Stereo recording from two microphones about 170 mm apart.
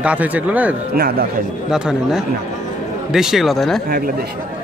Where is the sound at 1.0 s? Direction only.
60° right (ahead or behind).